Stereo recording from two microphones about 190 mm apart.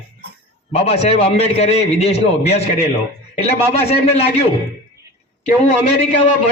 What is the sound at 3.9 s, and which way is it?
Speech, 35° left (ahead or behind).